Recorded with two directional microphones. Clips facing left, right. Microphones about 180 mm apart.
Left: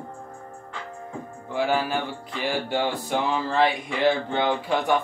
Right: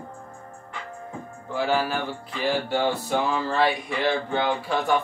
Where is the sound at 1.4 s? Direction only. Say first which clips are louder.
Even; 15° left (ahead or behind).